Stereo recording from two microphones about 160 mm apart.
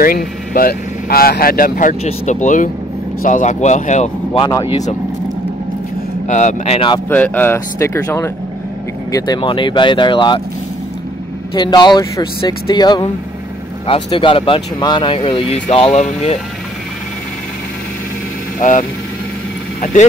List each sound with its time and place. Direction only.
0.5 s speech: 65° left (ahead or behind); by 4.4 s 45° left (ahead or behind)
4.4 s speech: 25° left (ahead or behind)
6.2 s speech: 50° left (ahead or behind)
7.1 s speech: 10° left (ahead or behind); by 10.4 s 30° left (ahead or behind)
11.5 s speech: 25° left (ahead or behind)
18.6 s speech: 50° left (ahead or behind)